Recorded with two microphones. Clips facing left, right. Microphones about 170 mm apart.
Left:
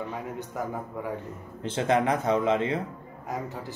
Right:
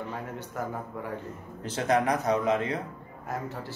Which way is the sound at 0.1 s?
15° left (ahead or behind).